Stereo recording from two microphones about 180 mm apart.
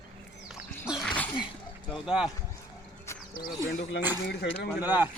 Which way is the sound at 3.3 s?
55° left (ahead or behind).